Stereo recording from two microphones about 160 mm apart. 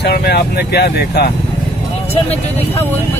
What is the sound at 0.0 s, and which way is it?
Speech, 90° left.